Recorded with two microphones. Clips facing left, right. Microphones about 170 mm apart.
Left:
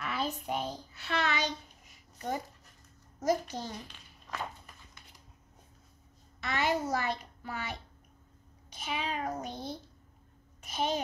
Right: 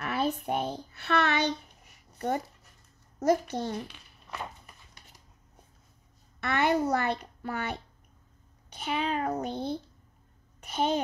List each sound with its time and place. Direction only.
0.0 s a child's voice: 55° right (ahead or behind)
6.4 s a child's voice: 60° right (ahead or behind)
10.6 s a sound: 60° right (ahead or behind)